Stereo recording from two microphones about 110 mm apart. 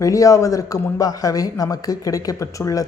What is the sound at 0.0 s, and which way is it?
A man's voice, 30° left (ahead or behind).